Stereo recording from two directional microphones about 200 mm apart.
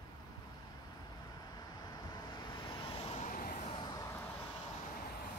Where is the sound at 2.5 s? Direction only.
25° left (ahead or behind).